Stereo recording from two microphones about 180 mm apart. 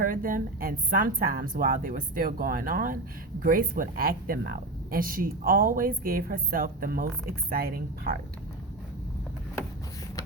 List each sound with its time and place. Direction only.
0.0 s a woman's voice: 50° right (ahead or behind)